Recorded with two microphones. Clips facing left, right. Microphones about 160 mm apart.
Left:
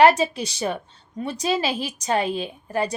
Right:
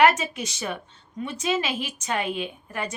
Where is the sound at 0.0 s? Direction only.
35° left (ahead or behind).